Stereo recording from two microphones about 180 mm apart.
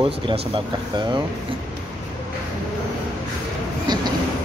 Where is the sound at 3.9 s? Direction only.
25° right (ahead or behind).